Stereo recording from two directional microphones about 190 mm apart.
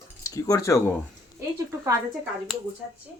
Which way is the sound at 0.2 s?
20° left (ahead or behind).